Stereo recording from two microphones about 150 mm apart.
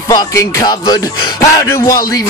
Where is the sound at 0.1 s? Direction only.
25° left (ahead or behind).